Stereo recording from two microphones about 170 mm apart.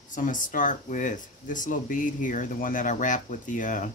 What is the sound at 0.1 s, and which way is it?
Speech, 50° left (ahead or behind).